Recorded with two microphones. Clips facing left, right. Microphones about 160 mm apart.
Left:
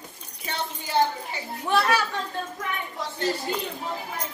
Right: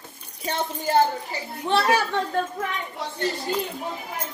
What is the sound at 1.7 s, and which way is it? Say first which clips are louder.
Speech: right 2 dB; 25° right (ahead or behind).